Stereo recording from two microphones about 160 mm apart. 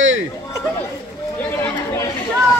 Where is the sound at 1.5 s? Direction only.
20° left (ahead or behind).